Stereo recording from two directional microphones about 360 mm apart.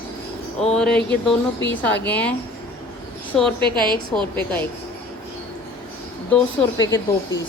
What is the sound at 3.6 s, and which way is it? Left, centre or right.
Speech, centre.